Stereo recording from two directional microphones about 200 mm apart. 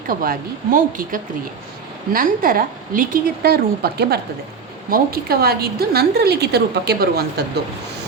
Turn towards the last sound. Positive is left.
turn(degrees=-50)  # may be behind; listen again after turning